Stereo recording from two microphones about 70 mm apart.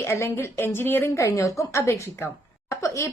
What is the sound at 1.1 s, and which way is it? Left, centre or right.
A woman's voice, left.